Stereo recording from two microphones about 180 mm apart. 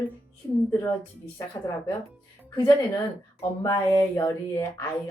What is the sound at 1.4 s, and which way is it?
Speech, 20° left (ahead or behind).